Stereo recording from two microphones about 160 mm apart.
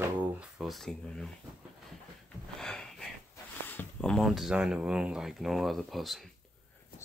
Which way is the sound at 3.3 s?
10° left (ahead or behind).